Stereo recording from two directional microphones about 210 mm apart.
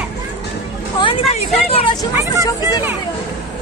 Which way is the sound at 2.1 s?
15° right (ahead or behind).